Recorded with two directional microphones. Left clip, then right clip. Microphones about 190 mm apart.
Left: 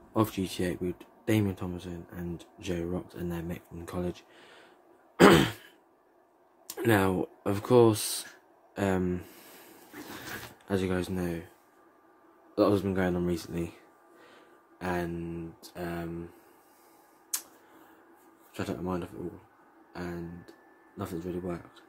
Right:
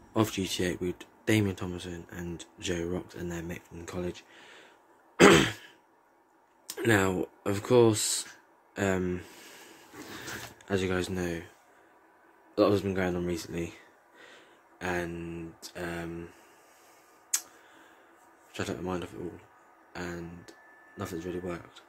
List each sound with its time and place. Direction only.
0.1 s speech: 10° left (ahead or behind)
5.1 s throat clearing: 15° left (ahead or behind)
6.7 s speech: 15° left (ahead or behind)
10.6 s speech: 10° left (ahead or behind)
12.5 s speech: 15° left (ahead or behind)
17.3 s tick-tock: 10° left (ahead or behind)
18.5 s a man's voice: 10° left (ahead or behind)